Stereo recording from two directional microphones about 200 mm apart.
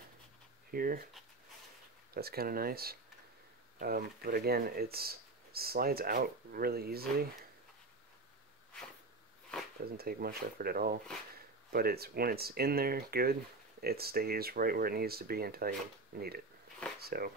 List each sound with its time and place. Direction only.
0.7 s speech: 45° right (ahead or behind)
2.1 s speech: 50° right (ahead or behind)
9.9 s speech: 50° right (ahead or behind)